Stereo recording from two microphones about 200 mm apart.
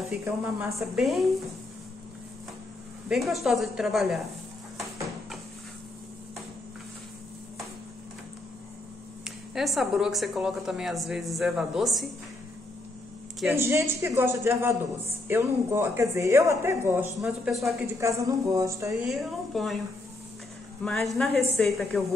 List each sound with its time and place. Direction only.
0.2 s speech: 15° right (ahead or behind)
0.7 s a woman's voice: centre (ahead or behind)
3.1 s a woman's voice: centre (ahead or behind)
9.5 s a woman's voice: centre (ahead or behind)
13.6 s speech: 10° right (ahead or behind)
17.9 s speech: 15° right (ahead or behind)
19.0 s a woman's voice: centre (ahead or behind)
20.8 s a woman's voice: centre (ahead or behind)